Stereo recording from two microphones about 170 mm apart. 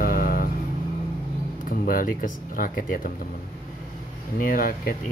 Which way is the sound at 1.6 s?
55° left (ahead or behind).